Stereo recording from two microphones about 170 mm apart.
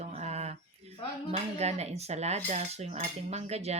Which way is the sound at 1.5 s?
40° right (ahead or behind).